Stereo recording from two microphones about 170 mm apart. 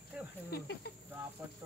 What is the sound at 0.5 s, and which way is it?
Speech, 70° left (ahead or behind).